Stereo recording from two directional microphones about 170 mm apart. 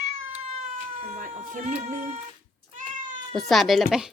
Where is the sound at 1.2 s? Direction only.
45° right (ahead or behind).